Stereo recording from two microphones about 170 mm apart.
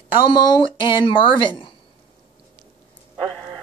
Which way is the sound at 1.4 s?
30° left (ahead or behind).